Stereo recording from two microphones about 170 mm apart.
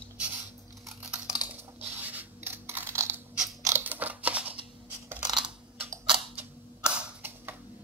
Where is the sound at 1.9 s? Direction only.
10° right (ahead or behind).